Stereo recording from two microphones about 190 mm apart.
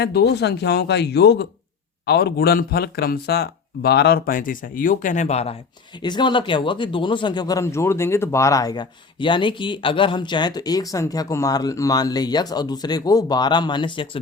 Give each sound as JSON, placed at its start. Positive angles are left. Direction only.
{"t": 0.0, "sound": "speech", "side_deg": 60}
{"t": 6.0, "sound": "speech", "side_deg": 25}